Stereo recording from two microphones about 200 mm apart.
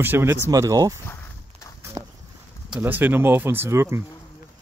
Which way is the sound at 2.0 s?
20° right (ahead or behind).